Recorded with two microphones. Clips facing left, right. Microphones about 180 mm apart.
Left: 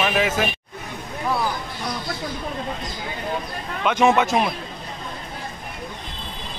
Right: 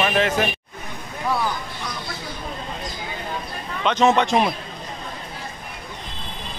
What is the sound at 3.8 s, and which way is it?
Speech, 10° left (ahead or behind).